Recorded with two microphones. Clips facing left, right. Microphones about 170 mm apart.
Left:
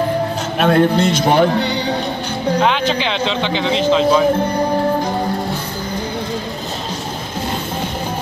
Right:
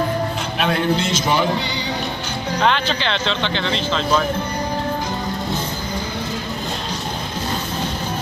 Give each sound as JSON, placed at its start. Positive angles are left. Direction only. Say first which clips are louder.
{"t": 0.6, "sound": "a man's voice", "louder": "left 7 dB", "side_deg": 50}
{"t": 2.9, "sound": "speech", "louder": "left 4 dB", "side_deg": 10}